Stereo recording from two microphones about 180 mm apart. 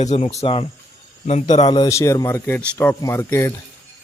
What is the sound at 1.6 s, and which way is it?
A man's voice, 25° left (ahead or behind).